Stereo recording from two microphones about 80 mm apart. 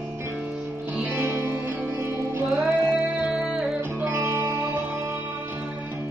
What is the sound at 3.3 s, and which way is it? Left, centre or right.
Music, centre.